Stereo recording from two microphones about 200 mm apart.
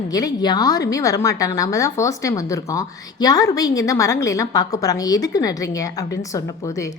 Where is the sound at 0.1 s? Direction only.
20° left (ahead or behind).